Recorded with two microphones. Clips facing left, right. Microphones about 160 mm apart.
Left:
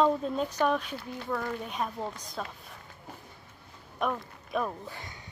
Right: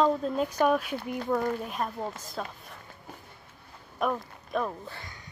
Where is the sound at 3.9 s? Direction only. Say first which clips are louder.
Right 2 dB; centre (ahead or behind).